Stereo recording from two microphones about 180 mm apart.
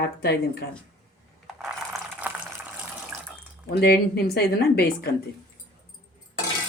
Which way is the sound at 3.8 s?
60° left (ahead or behind).